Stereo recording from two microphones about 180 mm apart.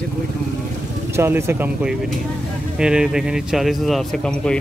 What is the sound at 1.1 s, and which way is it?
Speech, 15° right (ahead or behind).